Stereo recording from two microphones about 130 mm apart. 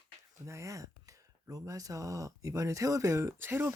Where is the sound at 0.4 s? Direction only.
25° right (ahead or behind).